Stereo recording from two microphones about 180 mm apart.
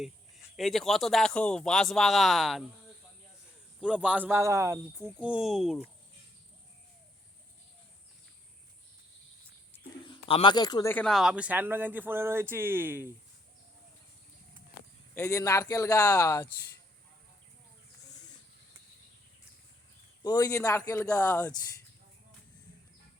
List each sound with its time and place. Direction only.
0.5 s speech: centre (ahead or behind)
3.8 s speech: 5° right (ahead or behind)
10.1 s speech: 30° left (ahead or behind)
10.9 s speech: centre (ahead or behind)
15.1 s speech: 15° left (ahead or behind)
20.2 s speech: 20° left (ahead or behind)